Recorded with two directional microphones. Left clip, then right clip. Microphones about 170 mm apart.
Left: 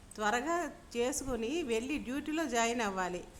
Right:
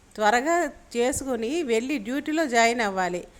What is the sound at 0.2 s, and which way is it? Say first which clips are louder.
A woman's voice: right 11 dB; 30° right (ahead or behind).